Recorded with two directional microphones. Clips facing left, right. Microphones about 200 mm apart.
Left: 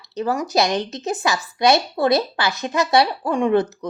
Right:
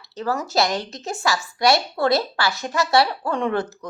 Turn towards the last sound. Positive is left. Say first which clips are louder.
# left 5 dB
turn(degrees=20)  # may be behind; listen again after turning